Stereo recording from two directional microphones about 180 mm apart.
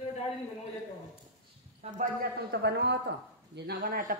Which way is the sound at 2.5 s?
70° right (ahead or behind).